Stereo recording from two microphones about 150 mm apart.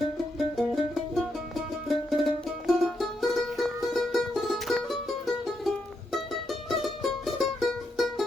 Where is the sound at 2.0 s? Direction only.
Centre (ahead or behind).